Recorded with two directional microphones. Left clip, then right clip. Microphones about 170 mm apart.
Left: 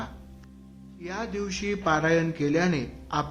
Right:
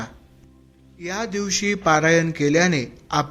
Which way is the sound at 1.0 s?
30° right (ahead or behind).